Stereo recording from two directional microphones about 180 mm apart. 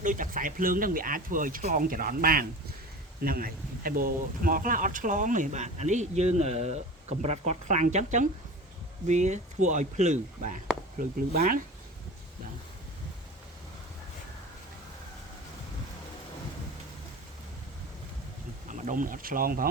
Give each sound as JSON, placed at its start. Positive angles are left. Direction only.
{"t": 0.0, "sound": "speech", "side_deg": -45}
{"t": 18.7, "sound": "speech", "side_deg": -45}